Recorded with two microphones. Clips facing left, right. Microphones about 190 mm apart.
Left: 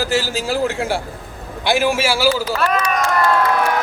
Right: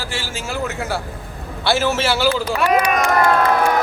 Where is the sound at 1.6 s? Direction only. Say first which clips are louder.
Left 1 dB; 15° left (ahead or behind).